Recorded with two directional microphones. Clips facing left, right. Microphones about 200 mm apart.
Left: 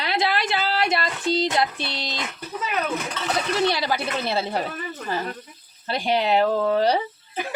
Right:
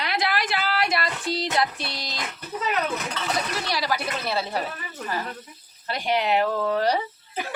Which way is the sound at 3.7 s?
25° left (ahead or behind).